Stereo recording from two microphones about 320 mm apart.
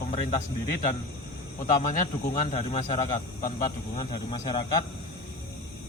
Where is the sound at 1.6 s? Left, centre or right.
Left.